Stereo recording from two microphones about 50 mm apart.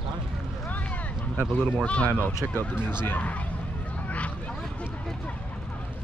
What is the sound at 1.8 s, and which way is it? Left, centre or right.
Speech, left.